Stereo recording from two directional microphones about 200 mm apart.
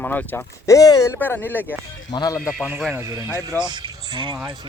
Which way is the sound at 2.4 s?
Centre (ahead or behind).